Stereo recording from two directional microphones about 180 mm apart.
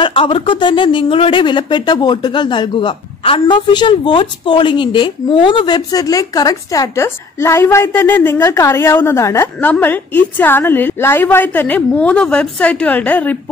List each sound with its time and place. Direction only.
0.0 s speech: 30° left (ahead or behind); by 13.4 s 10° left (ahead or behind)